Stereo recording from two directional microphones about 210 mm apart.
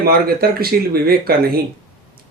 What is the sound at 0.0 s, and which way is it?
Speech, 45° right (ahead or behind).